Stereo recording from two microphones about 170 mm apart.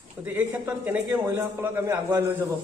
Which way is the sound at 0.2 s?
10° right (ahead or behind).